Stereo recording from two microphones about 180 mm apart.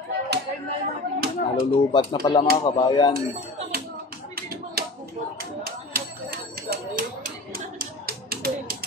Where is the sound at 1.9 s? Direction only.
25° left (ahead or behind).